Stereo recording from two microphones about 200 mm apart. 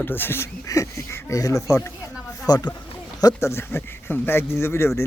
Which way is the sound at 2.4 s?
20° left (ahead or behind).